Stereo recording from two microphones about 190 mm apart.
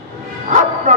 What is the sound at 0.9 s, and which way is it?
Speech, 45° right (ahead or behind).